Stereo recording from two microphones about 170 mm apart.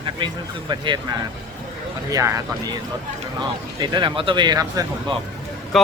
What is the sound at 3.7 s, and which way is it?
Speech, 25° right (ahead or behind).